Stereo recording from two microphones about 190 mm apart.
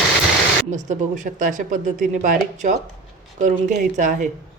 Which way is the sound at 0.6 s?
40° right (ahead or behind).